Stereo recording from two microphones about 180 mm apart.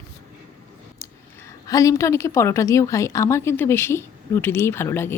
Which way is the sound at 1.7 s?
20° left (ahead or behind).